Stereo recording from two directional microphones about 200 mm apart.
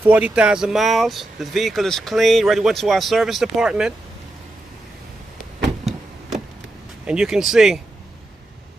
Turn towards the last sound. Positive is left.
turn(degrees=0)  # may be behind; listen again after turning